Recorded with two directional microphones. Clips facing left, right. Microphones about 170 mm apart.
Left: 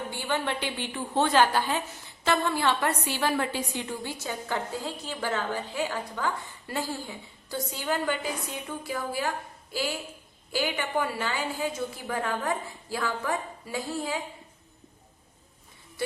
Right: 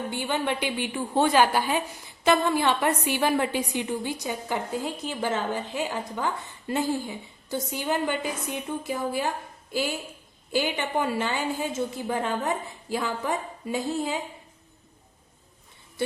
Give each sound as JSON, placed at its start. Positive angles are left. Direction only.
{"t": 0.1, "sound": "a woman's voice", "side_deg": -15}
{"t": 10.5, "sound": "a woman's voice", "side_deg": -20}